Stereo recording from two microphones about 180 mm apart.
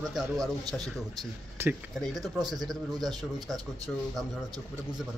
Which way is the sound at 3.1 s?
20° right (ahead or behind).